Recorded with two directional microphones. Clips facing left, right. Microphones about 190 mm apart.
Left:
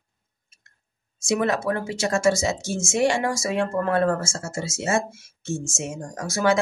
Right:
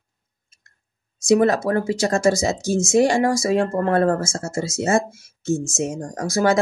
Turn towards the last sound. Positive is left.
turn(degrees=-40)  # may be behind; listen again after turning